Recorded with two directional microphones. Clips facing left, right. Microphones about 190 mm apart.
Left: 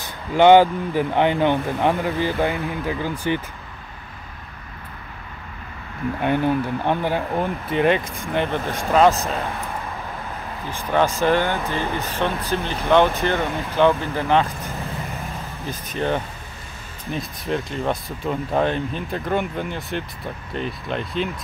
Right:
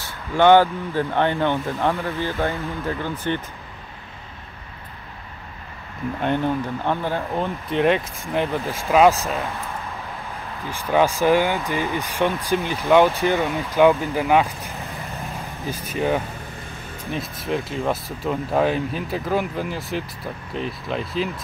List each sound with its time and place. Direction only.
0.0 s speech: 15° left (ahead or behind)
6.2 s speech: 10° left (ahead or behind)
7.7 s speech: centre (ahead or behind)
10.7 s speech: 10° right (ahead or behind)
15.6 s speech: 10° right (ahead or behind)